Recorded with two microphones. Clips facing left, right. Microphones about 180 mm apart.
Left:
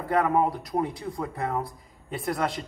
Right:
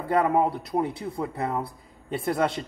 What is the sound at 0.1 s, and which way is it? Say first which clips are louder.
Speech: right 1 dB; 25° right (ahead or behind).